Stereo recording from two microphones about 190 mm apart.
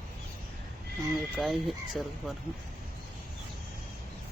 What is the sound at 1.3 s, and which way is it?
Speech, centre (ahead or behind).